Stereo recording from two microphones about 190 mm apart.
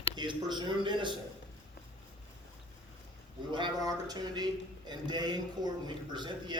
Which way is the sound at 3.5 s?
25° right (ahead or behind).